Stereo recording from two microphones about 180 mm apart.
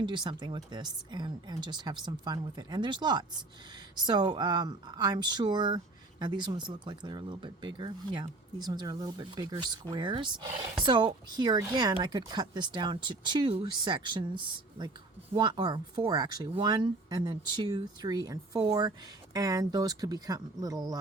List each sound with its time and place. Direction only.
0.0 s speech: 25° right (ahead or behind)